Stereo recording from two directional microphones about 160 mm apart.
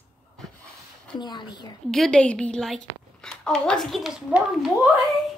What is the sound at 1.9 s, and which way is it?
A woman's voice, 5° left (ahead or behind).